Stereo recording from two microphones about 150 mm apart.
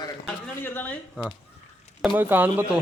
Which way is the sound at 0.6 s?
15° left (ahead or behind).